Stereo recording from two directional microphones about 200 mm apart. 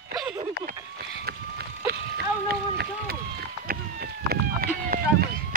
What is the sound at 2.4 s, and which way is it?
Speech, 50° right (ahead or behind).